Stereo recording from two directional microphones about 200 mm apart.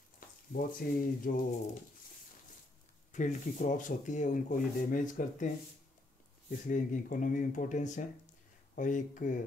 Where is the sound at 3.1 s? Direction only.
40° left (ahead or behind).